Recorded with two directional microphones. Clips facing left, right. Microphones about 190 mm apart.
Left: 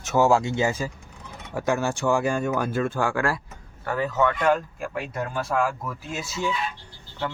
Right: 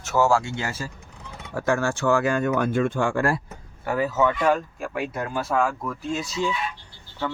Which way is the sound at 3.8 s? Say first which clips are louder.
Right 1 dB; 10° right (ahead or behind).